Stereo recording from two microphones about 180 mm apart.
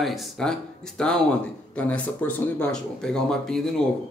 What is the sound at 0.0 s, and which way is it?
Speech, centre (ahead or behind).